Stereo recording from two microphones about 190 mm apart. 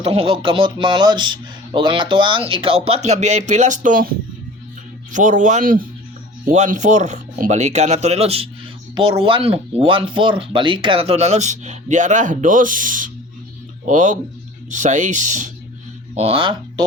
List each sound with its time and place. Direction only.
0.0 s speech: 30° right (ahead or behind)
5.1 s speech: 40° right (ahead or behind)
16.1 s speech: 30° right (ahead or behind)